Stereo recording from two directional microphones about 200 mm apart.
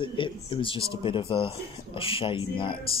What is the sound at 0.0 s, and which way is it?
Speech, 25° left (ahead or behind).